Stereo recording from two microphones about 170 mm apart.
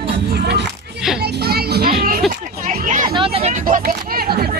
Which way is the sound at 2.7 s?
50° right (ahead or behind).